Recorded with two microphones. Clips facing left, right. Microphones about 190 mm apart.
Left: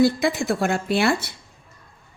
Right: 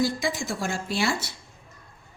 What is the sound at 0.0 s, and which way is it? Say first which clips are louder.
A woman's voice: left 7 dB; 60° left (ahead or behind).